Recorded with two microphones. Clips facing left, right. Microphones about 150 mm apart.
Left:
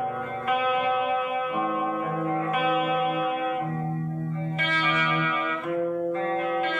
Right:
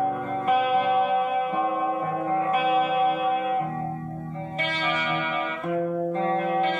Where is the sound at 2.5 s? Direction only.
35° right (ahead or behind).